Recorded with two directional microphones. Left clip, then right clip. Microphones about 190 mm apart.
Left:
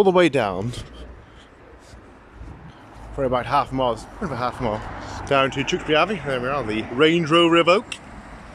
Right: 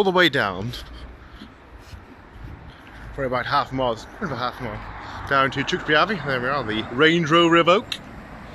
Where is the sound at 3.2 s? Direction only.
15° left (ahead or behind).